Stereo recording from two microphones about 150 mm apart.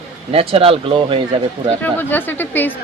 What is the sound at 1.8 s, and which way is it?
Speech, 10° left (ahead or behind).